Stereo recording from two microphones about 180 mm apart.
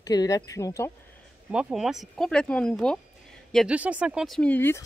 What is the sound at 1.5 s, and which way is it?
Speech, 5° right (ahead or behind).